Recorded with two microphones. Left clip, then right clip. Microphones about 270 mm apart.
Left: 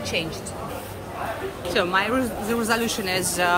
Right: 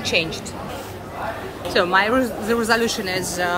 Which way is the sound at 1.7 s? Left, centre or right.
Centre.